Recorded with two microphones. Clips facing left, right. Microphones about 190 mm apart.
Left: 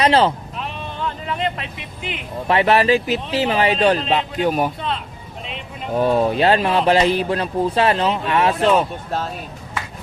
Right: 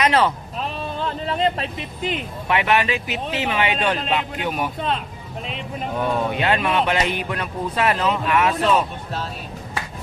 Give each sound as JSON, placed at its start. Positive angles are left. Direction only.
{"t": 0.0, "sound": "speech", "side_deg": 30}
{"t": 0.5, "sound": "vehicle", "side_deg": -35}
{"t": 2.5, "sound": "speech", "side_deg": 35}
{"t": 6.0, "sound": "speech", "side_deg": 35}